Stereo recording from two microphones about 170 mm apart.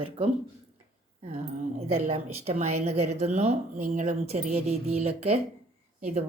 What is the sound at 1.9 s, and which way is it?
Speech, 40° right (ahead or behind).